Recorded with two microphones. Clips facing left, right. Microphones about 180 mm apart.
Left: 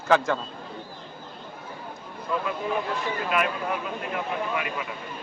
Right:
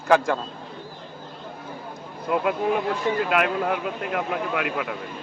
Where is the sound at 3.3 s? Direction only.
70° right (ahead or behind).